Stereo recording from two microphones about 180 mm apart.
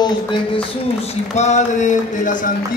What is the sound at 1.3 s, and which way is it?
Speech, 40° left (ahead or behind).